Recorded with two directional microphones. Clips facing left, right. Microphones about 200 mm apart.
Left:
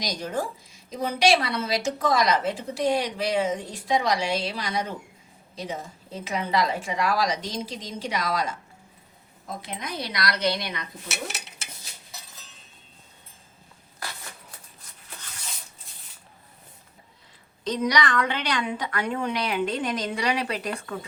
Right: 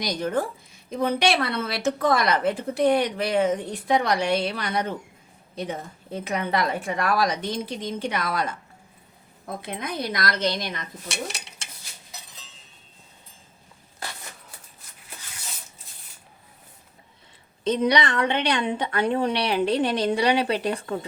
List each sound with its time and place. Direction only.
0.0 s a woman's voice: 55° right (ahead or behind)
11.1 s mechanisms: 5° left (ahead or behind)
17.6 s a woman's voice: 25° right (ahead or behind)